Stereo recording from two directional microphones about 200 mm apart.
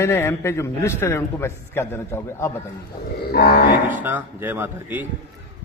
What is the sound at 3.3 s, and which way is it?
Cattle, 50° left (ahead or behind).